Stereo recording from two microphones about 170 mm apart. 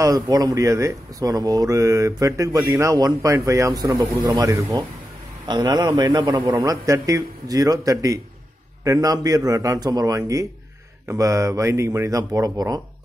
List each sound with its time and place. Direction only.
0.0 s speech: 20° right (ahead or behind)